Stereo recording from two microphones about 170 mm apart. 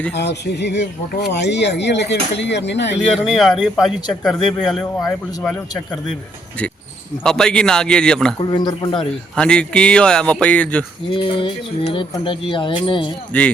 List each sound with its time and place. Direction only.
0.1 s speech: 85° left
3.2 s speech: centre (ahead or behind)
7.3 s speech: 5° left (ahead or behind)
8.4 s speech: 25° left (ahead or behind)
9.3 s speech: 5° left (ahead or behind)
11.1 s speech: 30° left (ahead or behind)
13.3 s speech: 10° left (ahead or behind)